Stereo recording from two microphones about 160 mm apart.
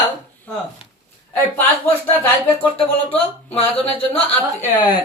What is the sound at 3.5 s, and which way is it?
Speech, 35° left (ahead or behind).